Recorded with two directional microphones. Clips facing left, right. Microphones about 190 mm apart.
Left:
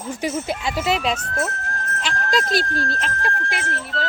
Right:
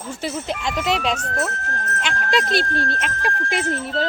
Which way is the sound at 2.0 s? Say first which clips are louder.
Right 1 dB; centre (ahead or behind).